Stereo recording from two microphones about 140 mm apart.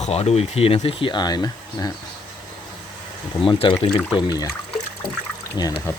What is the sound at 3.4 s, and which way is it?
Speech, 35° left (ahead or behind).